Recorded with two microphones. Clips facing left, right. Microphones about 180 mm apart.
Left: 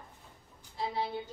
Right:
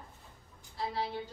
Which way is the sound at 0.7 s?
20° left (ahead or behind).